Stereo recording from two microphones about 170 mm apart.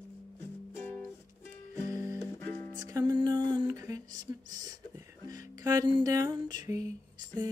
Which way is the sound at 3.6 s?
20° right (ahead or behind).